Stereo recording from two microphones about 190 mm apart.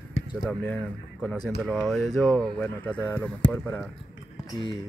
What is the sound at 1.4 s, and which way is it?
Speech, 5° left (ahead or behind).